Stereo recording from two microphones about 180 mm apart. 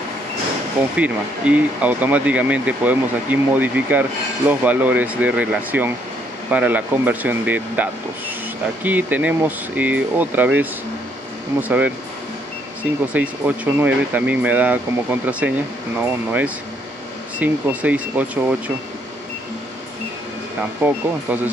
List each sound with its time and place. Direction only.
0.9 s speech: 10° right (ahead or behind)
13.1 s speech: 10° right (ahead or behind)
20.8 s speech: 10° right (ahead or behind)